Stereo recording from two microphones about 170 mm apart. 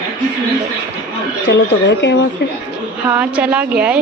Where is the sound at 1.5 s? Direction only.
85° left.